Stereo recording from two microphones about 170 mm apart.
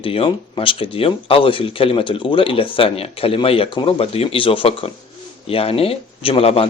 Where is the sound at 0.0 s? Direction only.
35° left (ahead or behind).